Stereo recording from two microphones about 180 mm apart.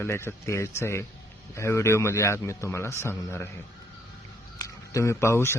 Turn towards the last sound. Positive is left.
turn(degrees=15)  # may be behind; listen again after turning